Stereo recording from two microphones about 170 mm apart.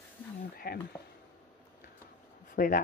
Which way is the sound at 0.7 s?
60° left (ahead or behind).